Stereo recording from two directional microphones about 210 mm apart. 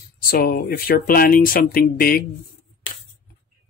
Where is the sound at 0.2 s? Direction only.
45° left (ahead or behind).